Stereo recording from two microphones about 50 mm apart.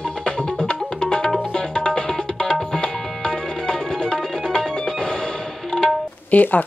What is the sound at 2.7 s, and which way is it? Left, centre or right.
Music, centre.